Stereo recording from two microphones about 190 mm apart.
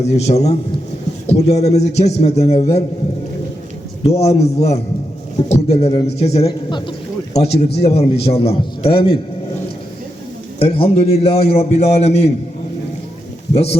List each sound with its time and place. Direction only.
0.0 s a man's voice: 35° left (ahead or behind)
4.0 s a man's voice: 35° left (ahead or behind)
10.6 s a man's voice: 30° left (ahead or behind)
13.5 s speech: 30° left (ahead or behind)